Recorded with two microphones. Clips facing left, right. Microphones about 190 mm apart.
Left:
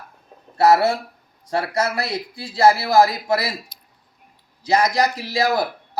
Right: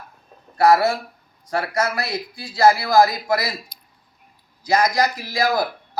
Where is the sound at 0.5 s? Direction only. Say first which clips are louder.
Even; 25° left (ahead or behind).